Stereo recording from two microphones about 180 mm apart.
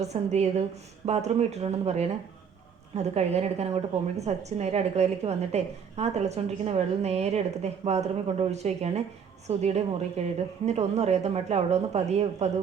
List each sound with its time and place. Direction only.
0.0 s a woman's voice: 35° right (ahead or behind)